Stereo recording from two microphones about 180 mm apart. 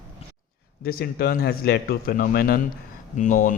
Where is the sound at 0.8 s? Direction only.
55° left (ahead or behind).